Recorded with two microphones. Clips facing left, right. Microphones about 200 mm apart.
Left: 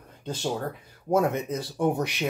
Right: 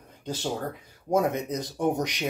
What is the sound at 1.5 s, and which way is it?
Speech, 15° right (ahead or behind).